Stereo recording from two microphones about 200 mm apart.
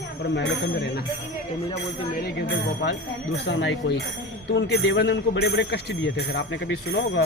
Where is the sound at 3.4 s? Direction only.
65° left (ahead or behind).